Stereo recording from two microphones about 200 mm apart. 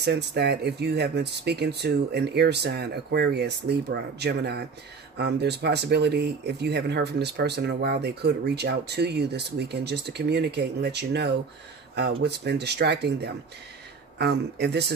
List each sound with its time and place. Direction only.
0.0 s speech: 55° right (ahead or behind)